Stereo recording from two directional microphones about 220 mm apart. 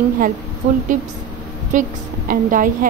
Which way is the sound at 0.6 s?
30° right (ahead or behind).